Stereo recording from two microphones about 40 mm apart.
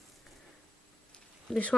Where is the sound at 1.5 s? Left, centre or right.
Centre.